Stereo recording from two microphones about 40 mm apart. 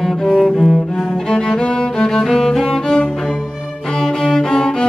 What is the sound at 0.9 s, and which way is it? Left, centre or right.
Music, centre.